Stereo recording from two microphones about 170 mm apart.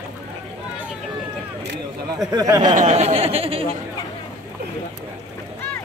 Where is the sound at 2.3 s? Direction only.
25° right (ahead or behind).